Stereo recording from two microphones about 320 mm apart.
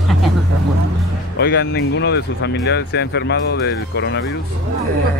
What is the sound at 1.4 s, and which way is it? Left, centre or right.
Speech, left.